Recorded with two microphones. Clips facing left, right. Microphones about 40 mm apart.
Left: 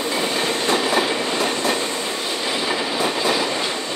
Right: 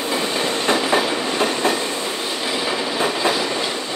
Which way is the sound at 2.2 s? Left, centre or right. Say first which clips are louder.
Even; centre.